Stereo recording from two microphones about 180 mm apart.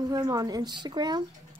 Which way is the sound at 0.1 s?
20° right (ahead or behind).